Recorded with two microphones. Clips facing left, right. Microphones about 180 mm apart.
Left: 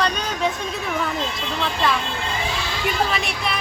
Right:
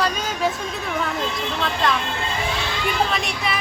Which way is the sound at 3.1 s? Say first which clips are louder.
Even; centre (ahead or behind).